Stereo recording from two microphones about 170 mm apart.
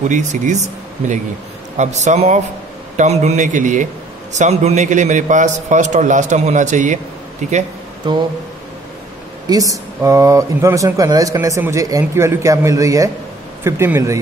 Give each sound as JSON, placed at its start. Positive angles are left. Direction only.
{"t": 0.0, "sound": "a man's voice", "side_deg": -45}
{"t": 8.0, "sound": "speech", "side_deg": -25}
{"t": 9.5, "sound": "speech", "side_deg": -20}